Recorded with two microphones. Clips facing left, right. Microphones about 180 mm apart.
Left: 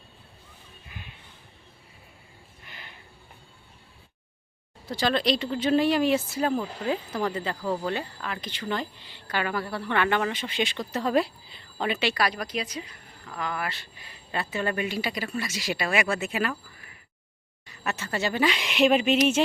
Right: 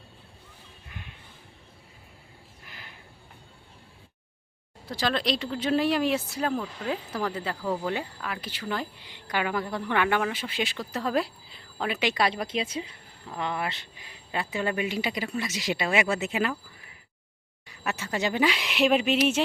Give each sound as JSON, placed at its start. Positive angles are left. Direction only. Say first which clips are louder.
{"t": 2.6, "sound": "a sound", "louder": "left 1 dB", "side_deg": 0}
{"t": 4.9, "sound": "speech", "louder": "left 3 dB", "side_deg": 0}
{"t": 11.9, "sound": "speech", "louder": "right 4 dB", "side_deg": -20}
{"t": 17.7, "sound": "speech", "louder": "even", "side_deg": -10}
{"t": 18.5, "sound": "speech", "louder": "left 2 dB", "side_deg": -5}